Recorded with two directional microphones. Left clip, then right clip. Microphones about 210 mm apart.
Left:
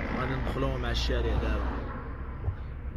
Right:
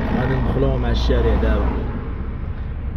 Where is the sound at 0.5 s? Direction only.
Centre (ahead or behind).